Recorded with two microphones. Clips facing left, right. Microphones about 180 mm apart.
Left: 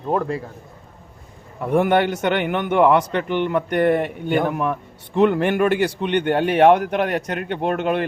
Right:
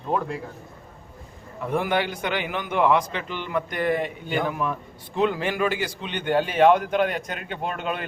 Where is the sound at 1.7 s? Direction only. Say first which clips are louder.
Left 7 dB; 60° left (ahead or behind).